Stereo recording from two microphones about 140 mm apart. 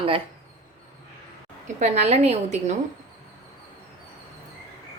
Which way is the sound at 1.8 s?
50° right (ahead or behind).